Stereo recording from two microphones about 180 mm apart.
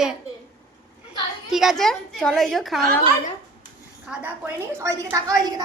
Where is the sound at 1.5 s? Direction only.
Centre (ahead or behind).